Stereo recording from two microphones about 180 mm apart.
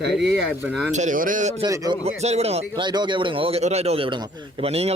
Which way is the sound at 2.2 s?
35° right (ahead or behind).